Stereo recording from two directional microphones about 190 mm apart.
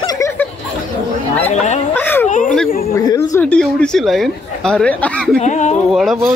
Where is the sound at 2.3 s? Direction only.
45° left (ahead or behind).